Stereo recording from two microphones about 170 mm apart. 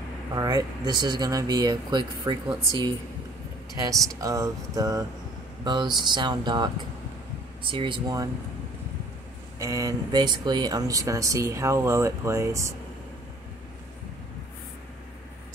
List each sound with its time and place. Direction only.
0.3 s speech: 20° right (ahead or behind)
4.2 s speech: 20° right (ahead or behind)
9.6 s speech: 20° right (ahead or behind)